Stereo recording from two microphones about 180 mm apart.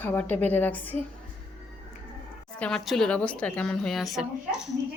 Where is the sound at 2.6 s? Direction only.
5° left (ahead or behind).